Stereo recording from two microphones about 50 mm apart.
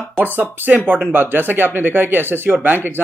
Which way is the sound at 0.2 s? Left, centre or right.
Right.